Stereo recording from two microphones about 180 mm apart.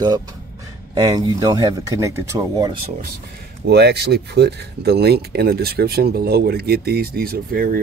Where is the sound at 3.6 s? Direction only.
65° right (ahead or behind).